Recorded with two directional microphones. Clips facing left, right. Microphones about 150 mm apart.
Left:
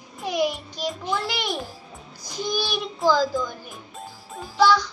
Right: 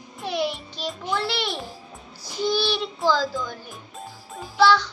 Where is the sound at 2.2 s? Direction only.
15° left (ahead or behind).